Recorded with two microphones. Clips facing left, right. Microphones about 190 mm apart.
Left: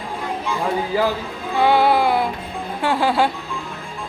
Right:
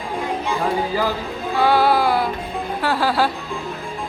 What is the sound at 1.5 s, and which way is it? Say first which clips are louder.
Music: left 1 dB; 20° left (ahead or behind).